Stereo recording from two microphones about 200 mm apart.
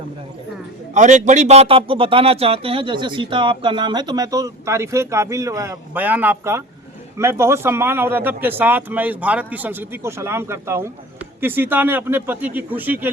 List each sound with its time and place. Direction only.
0.9 s speech: 35° right (ahead or behind); by 13.1 s 10° right (ahead or behind)